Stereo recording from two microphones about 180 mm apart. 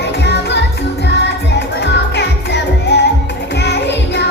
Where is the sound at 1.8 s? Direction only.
70° left (ahead or behind).